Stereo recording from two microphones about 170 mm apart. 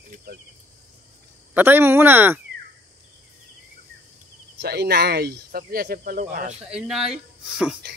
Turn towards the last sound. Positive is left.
turn(degrees=-5)  # may be behind; listen again after turning